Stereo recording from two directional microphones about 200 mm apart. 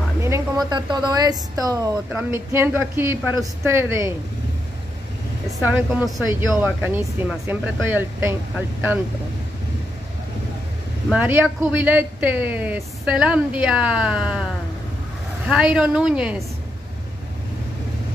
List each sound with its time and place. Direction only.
0.2 s speech: 15° right (ahead or behind)
5.6 s speech: 10° right (ahead or behind)
11.1 s speech: 10° right (ahead or behind)
15.4 s speech: 5° right (ahead or behind)